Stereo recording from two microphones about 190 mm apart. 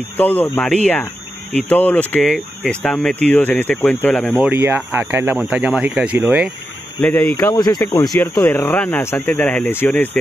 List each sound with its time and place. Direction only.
0.2 s speech: 10° left (ahead or behind)
4.6 s speech: 10° right (ahead or behind)
7.0 s speech: 5° left (ahead or behind)
7.3 s speech: 20° left (ahead or behind)